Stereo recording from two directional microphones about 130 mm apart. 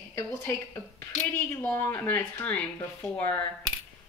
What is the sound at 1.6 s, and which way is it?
Speech, 15° left (ahead or behind).